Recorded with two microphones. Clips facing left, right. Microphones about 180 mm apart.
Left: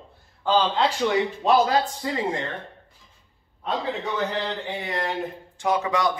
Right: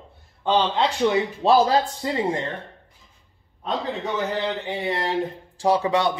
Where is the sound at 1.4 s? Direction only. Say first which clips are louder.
Right 3 dB; 30° right (ahead or behind).